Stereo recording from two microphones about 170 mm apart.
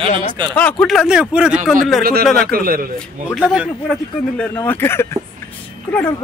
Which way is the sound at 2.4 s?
60° right (ahead or behind).